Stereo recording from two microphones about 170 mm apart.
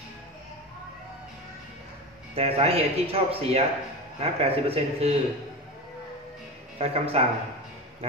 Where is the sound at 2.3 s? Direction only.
35° right (ahead or behind).